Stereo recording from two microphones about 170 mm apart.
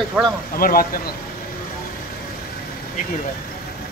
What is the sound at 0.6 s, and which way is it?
Speech, 60° left (ahead or behind).